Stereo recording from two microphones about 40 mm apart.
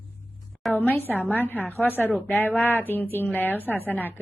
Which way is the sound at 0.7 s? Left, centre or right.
Left.